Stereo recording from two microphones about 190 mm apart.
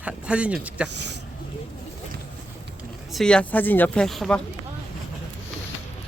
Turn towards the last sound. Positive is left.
turn(degrees=0)  # may be behind; listen again after turning